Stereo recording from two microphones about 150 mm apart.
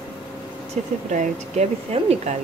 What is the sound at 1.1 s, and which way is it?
A woman's voice, 55° right (ahead or behind).